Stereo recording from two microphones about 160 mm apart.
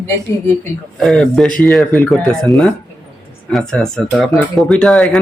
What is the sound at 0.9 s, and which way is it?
Speech, 5° left (ahead or behind).